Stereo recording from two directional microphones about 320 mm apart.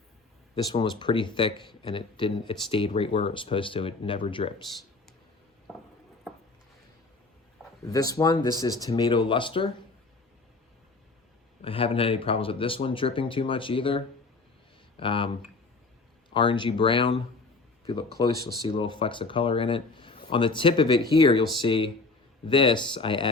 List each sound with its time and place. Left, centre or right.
0.5 s speech: centre
7.9 s speech: centre
11.6 s speech: centre
16.3 s speech: centre